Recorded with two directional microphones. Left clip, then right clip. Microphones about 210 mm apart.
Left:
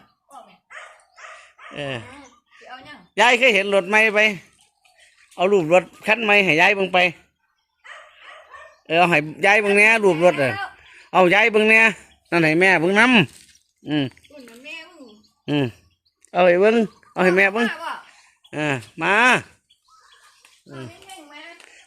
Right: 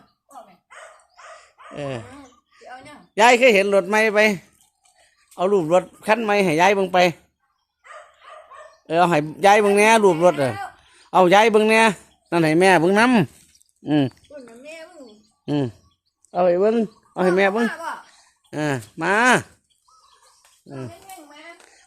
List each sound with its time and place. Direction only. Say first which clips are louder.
1.4 s a sound: even; 5° right (ahead or behind)
3.2 s a man's voice: right 2 dB; centre (ahead or behind)
5.3 s speech: left 2 dB; 10° left (ahead or behind)
8.9 s a man's voice: left 1 dB; centre (ahead or behind)
13.8 s speech: right 3 dB; 15° right (ahead or behind)
14.3 s a sound: even; 35° left (ahead or behind)
15.4 s speech: left 1 dB; centre (ahead or behind)
16.3 s a man's voice: left 3 dB; 15° left (ahead or behind); by 19.5 s 5° right (ahead or behind)